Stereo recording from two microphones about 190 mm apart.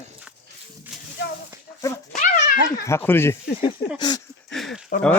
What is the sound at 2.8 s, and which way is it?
Speech, 10° left (ahead or behind).